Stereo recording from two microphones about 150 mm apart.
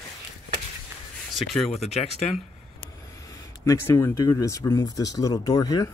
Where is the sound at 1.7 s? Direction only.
45° left (ahead or behind).